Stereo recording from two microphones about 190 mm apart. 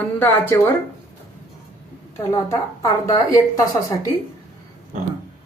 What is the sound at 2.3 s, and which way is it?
A woman's voice, 15° left (ahead or behind).